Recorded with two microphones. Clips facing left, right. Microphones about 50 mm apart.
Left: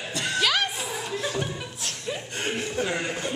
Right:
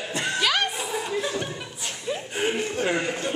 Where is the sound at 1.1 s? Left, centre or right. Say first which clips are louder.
Right 1 dB; centre.